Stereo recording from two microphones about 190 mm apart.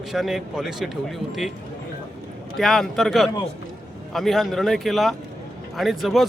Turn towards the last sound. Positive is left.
turn(degrees=0)  # may be behind; listen again after turning